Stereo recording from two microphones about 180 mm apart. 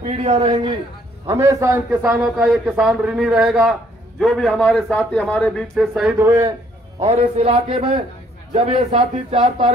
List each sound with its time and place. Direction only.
0.0 s speech: 35° right (ahead or behind)
1.3 s a man's voice: 15° right (ahead or behind)
2.2 s a man's voice: 5° right (ahead or behind)
7.0 s speech: 35° right (ahead or behind)